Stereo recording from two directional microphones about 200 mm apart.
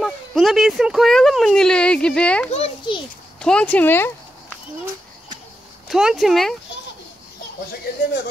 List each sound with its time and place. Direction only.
0.0 s speech: centre (ahead or behind)
2.5 s a sound: 30° left (ahead or behind)
3.3 s speech: 5° left (ahead or behind)
5.9 s speech: centre (ahead or behind)